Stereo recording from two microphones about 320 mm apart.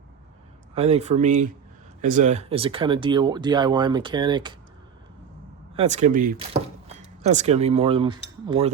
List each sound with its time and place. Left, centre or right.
0.7 s speech: centre
5.7 s speech: right